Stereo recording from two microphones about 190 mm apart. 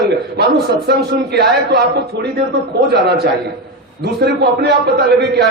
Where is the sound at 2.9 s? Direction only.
60° right (ahead or behind).